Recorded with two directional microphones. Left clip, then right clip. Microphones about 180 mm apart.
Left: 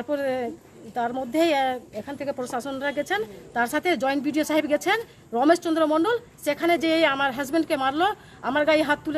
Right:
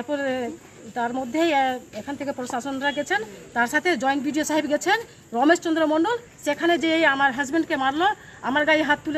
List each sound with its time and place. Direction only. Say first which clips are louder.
0.0 s speech: even; 25° left (ahead or behind)